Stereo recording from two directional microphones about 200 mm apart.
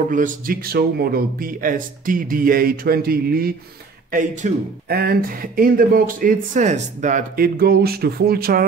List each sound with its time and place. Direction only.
0.1 s speech: 40° right (ahead or behind)